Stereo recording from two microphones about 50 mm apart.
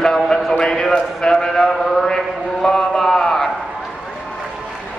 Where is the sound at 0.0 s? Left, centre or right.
Centre.